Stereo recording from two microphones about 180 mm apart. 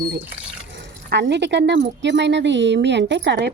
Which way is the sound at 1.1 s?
75° right (ahead or behind).